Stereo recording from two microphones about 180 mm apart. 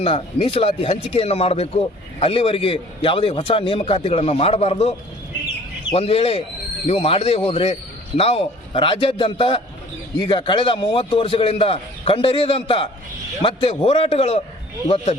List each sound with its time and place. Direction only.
0.0 s a man's voice: 30° left (ahead or behind)